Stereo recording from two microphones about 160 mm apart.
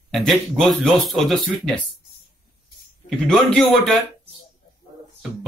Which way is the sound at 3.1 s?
5° left (ahead or behind).